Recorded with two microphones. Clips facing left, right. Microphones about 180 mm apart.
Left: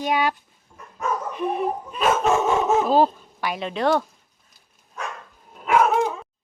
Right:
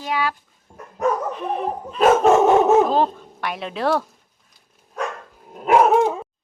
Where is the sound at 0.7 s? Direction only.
35° right (ahead or behind).